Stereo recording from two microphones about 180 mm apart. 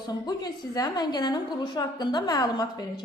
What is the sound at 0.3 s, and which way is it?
A woman's voice, 20° left (ahead or behind).